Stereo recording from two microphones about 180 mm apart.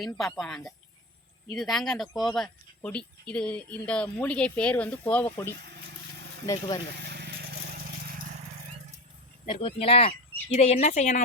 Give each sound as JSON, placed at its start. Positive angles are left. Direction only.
{"t": 0.0, "sound": "speech", "side_deg": 0}
{"t": 6.4, "sound": "speech", "side_deg": 20}
{"t": 6.9, "sound": "vehicle", "side_deg": -65}
{"t": 9.5, "sound": "speech", "side_deg": 30}